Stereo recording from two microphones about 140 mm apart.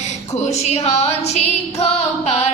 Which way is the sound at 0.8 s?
50° left (ahead or behind).